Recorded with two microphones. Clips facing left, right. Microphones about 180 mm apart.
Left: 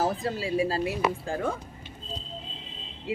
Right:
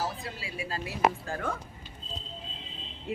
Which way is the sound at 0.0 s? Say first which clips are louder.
Left 8 dB; 45° left (ahead or behind).